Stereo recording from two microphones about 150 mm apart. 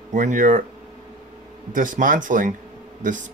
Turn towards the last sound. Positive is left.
turn(degrees=-60)  # may be behind; listen again after turning